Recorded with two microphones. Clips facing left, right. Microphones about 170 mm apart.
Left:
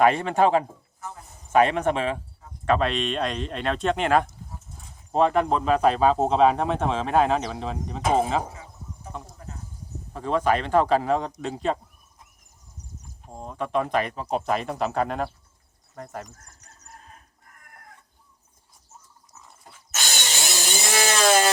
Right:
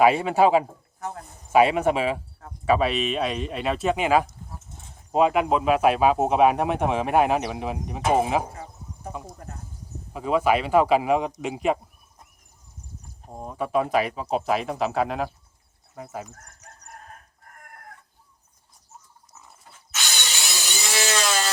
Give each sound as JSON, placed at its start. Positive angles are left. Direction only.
{"t": 0.0, "sound": "speech", "side_deg": -5}
{"t": 0.9, "sound": "a sound", "side_deg": -65}
{"t": 1.5, "sound": "speech", "side_deg": -10}
{"t": 13.3, "sound": "speech", "side_deg": -10}
{"t": 19.9, "sound": "tools", "side_deg": 45}